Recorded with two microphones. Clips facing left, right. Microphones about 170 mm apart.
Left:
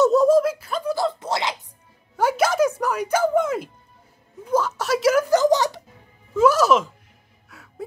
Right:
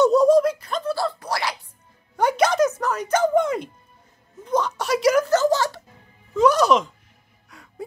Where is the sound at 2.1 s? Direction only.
5° left (ahead or behind).